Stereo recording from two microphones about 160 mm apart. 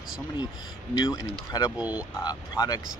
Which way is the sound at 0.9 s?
25° left (ahead or behind).